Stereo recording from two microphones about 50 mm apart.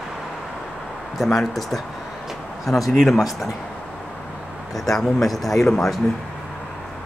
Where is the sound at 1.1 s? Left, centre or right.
Centre.